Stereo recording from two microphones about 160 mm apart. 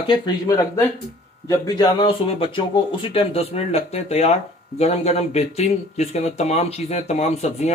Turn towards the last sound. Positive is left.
turn(degrees=45)  # may be behind; listen again after turning